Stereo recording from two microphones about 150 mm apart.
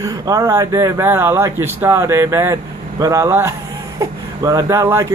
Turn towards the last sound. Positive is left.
turn(degrees=-20)  # may be behind; listen again after turning